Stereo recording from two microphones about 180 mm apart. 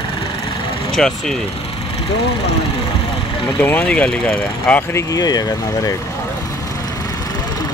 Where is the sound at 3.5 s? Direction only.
10° left (ahead or behind).